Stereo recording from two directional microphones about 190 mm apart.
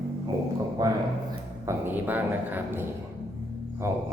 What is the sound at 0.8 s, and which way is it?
A man's voice, 20° right (ahead or behind).